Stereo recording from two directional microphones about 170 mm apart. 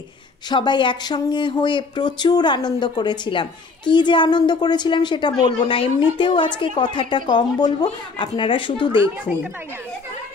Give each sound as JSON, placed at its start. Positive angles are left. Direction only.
{"t": 0.5, "sound": "speech", "side_deg": 25}